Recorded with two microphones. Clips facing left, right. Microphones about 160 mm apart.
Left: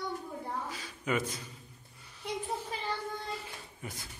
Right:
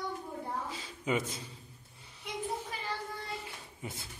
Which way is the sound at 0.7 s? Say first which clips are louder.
Even; 20° right (ahead or behind).